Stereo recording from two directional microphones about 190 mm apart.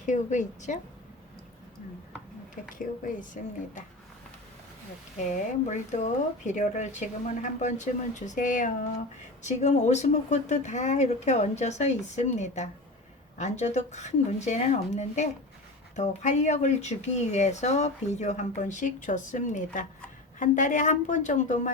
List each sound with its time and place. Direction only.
0.0 s speech: 40° left (ahead or behind)
2.7 s speech: 45° left (ahead or behind)
5.3 s speech: 40° left (ahead or behind)